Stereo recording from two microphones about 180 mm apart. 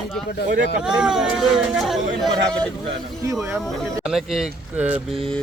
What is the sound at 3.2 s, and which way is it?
Speech, 15° right (ahead or behind).